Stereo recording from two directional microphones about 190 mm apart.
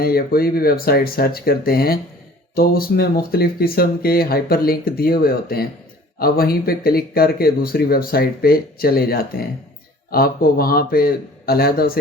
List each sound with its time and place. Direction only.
0.0 s speech: 50° left (ahead or behind)